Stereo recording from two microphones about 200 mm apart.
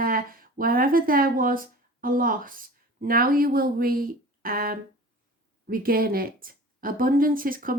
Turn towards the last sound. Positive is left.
turn(degrees=-45)  # may be behind; listen again after turning